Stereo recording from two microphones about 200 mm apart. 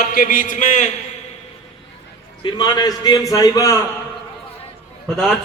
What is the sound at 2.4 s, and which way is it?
A man's voice, 20° left (ahead or behind).